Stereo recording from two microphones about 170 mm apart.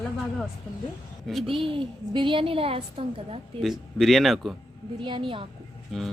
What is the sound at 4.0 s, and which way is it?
Speech, centre (ahead or behind).